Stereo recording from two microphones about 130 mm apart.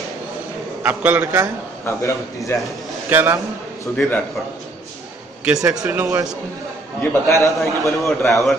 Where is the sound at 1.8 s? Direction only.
20° left (ahead or behind).